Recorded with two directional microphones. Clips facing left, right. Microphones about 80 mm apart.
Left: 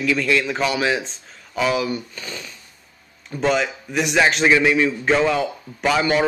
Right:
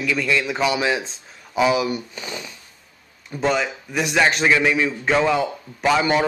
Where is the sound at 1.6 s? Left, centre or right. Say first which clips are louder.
Right 2 dB; centre.